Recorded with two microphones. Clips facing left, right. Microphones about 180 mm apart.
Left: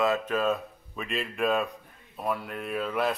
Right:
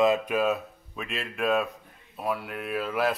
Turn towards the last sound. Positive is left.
turn(degrees=-5)  # may be behind; listen again after turning